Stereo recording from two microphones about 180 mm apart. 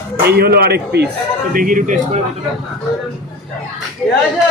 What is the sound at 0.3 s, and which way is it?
Speech, 60° right (ahead or behind).